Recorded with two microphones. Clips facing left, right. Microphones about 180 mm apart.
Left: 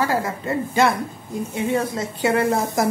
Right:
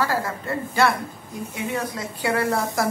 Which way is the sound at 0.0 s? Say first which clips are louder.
Left 2 dB; 20° left (ahead or behind).